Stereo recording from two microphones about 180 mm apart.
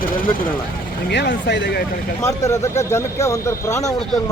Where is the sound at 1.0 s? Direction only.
70° left (ahead or behind).